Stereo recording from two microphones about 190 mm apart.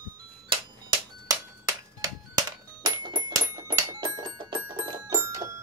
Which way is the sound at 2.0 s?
20° right (ahead or behind).